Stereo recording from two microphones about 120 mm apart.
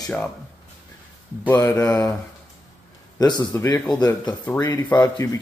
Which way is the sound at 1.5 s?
25° left (ahead or behind).